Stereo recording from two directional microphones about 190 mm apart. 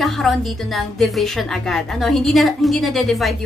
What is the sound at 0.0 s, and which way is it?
A woman's voice, centre (ahead or behind).